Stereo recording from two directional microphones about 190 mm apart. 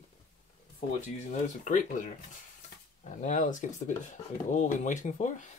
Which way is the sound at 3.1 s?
40° left (ahead or behind).